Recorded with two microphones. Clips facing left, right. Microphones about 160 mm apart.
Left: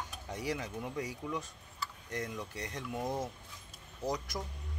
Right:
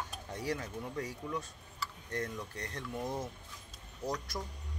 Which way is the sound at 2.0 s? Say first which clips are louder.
Right 1 dB; 15° left (ahead or behind).